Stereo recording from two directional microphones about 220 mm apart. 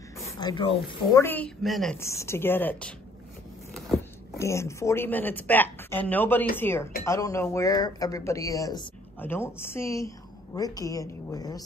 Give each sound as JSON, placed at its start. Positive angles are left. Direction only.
{"t": 0.2, "sound": "a sound", "side_deg": 20}
{"t": 1.1, "sound": "a woman's voice", "side_deg": 10}
{"t": 2.0, "sound": "speech", "side_deg": 10}
{"t": 4.4, "sound": "speech", "side_deg": 15}